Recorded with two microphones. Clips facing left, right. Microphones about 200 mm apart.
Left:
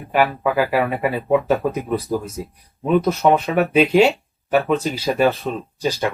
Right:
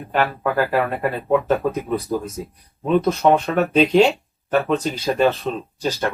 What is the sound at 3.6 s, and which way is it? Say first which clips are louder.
A man's voice: left 1 dB; 10° left (ahead or behind).